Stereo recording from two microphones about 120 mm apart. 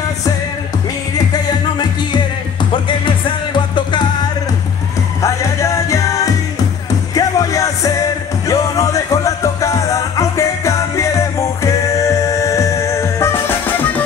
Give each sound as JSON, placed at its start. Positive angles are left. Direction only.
{"t": 1.1, "sound": "music", "side_deg": 35}
{"t": 3.5, "sound": "music", "side_deg": 40}
{"t": 5.2, "sound": "music", "side_deg": 25}